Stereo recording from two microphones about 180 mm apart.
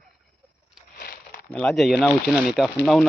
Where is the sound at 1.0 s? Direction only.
55° left (ahead or behind).